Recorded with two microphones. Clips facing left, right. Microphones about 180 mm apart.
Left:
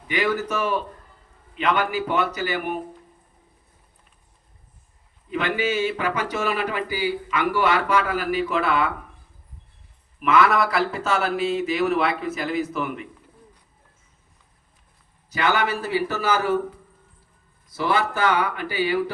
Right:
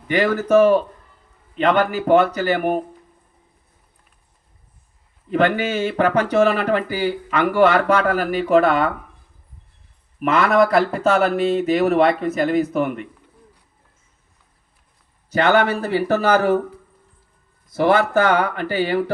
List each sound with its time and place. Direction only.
0.1 s speech: 45° right (ahead or behind)
5.3 s speech: 50° right (ahead or behind)
10.2 s speech: 45° right (ahead or behind)
15.3 s speech: 50° right (ahead or behind)
17.7 s speech: 50° right (ahead or behind)